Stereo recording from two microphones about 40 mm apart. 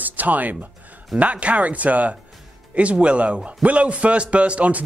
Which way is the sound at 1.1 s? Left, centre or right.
Right.